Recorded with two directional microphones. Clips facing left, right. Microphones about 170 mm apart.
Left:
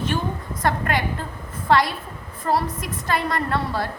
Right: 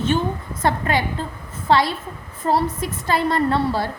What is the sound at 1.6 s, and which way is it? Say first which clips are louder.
A woman's voice: right 1 dB; 25° right (ahead or behind).